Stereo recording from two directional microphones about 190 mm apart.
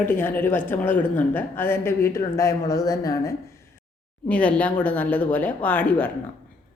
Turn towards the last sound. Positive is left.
turn(degrees=10)  # may be behind; listen again after turning